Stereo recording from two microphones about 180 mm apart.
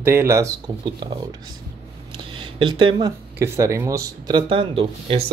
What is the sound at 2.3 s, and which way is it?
Speech, 25° right (ahead or behind).